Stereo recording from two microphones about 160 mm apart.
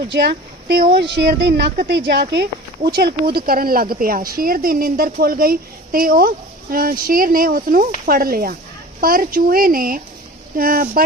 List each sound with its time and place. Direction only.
0.1 s speech: 90° right
2.3 s speech: 90° right
3.3 s a woman's voice: 70° right (ahead or behind)